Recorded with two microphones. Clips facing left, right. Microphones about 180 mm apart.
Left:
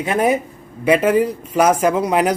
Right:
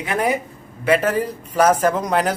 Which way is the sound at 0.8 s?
10° left (ahead or behind).